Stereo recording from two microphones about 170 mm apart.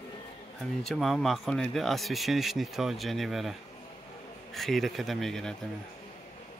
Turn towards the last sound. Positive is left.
turn(degrees=0)  # may be behind; listen again after turning